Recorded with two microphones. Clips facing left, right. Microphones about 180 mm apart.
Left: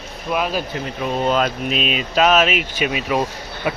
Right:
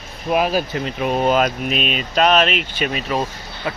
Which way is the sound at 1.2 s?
10° right (ahead or behind).